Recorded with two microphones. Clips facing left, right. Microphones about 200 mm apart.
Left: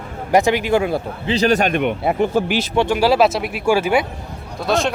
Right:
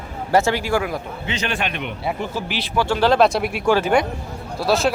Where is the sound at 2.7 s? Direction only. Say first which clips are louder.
Left 1 dB; 15° left (ahead or behind).